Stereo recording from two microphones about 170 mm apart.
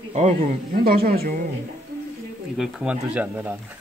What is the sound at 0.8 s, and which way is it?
Speech, 60° right (ahead or behind).